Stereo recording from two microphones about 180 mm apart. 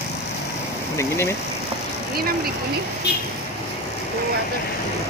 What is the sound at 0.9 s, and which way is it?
Speech, 15° left (ahead or behind).